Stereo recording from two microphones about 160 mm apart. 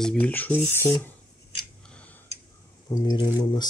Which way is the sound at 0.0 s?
5° left (ahead or behind).